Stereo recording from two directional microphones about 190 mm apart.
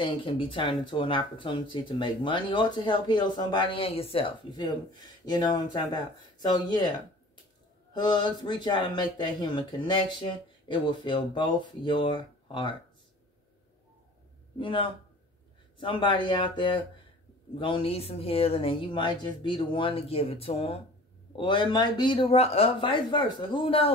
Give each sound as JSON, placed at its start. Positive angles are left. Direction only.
{"t": 0.0, "sound": "speech", "side_deg": 25}
{"t": 7.9, "sound": "speech", "side_deg": 25}
{"t": 14.6, "sound": "speech", "side_deg": 25}